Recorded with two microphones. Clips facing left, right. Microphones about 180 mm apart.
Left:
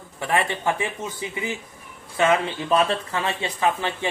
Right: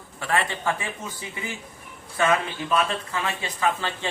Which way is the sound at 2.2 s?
20° left (ahead or behind).